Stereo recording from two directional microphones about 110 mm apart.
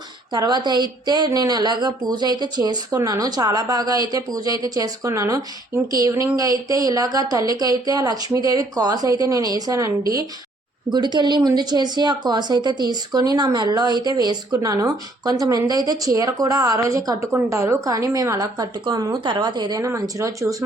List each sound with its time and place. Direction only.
0.3 s a woman's voice: 40° right (ahead or behind)
10.8 s a woman's voice: 40° right (ahead or behind)
19.8 s speech: 25° right (ahead or behind)